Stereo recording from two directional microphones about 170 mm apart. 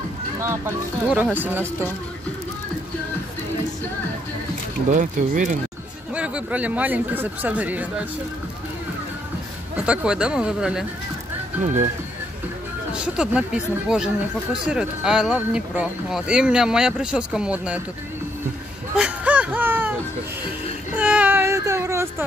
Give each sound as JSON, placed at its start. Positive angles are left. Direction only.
{"t": 1.1, "sound": "speech", "side_deg": -10}
{"t": 4.9, "sound": "speech", "side_deg": -50}
{"t": 6.1, "sound": "speech", "side_deg": -5}
{"t": 9.8, "sound": "speech", "side_deg": -5}
{"t": 12.9, "sound": "speech", "side_deg": -5}
{"t": 18.9, "sound": "music", "side_deg": -10}
{"t": 20.9, "sound": "baby cry", "side_deg": -5}